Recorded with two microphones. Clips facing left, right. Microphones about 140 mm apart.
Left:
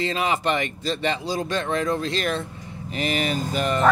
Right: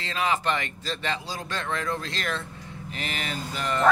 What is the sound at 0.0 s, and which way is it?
Speech, 20° left (ahead or behind).